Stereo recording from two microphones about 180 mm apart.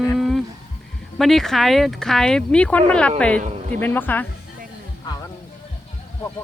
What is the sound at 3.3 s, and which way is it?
Speech, 40° right (ahead or behind).